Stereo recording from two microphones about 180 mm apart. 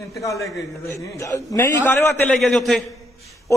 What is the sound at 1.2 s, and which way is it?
A man's voice, 15° left (ahead or behind).